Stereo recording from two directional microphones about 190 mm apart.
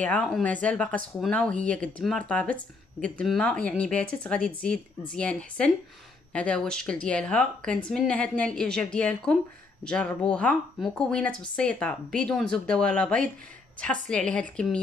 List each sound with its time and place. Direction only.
0.0 s speech: 5° left (ahead or behind)